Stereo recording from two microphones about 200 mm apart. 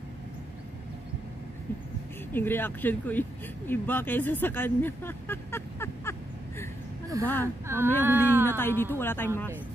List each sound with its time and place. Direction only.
2.3 s speech: 10° left (ahead or behind)
7.2 s speech: 15° right (ahead or behind)
8.5 s speech: 10° left (ahead or behind)